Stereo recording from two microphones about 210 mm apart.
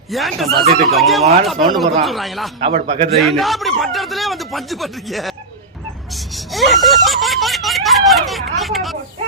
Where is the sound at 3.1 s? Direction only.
Centre (ahead or behind).